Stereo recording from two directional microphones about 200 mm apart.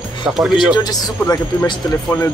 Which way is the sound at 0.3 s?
Centre (ahead or behind).